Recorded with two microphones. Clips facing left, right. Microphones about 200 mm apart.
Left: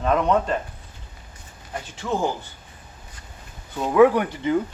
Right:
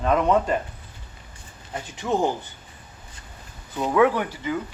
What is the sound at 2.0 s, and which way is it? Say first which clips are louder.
Speech: right 2 dB; 15° right (ahead or behind).